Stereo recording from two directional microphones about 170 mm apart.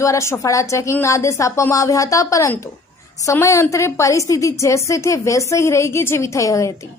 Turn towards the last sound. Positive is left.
turn(degrees=20)  # may be behind; listen again after turning